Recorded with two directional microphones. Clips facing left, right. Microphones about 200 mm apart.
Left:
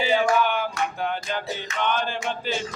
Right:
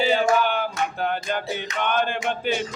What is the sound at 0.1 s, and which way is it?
Music, 30° right (ahead or behind).